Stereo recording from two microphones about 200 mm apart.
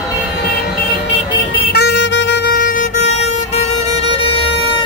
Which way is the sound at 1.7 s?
55° left (ahead or behind).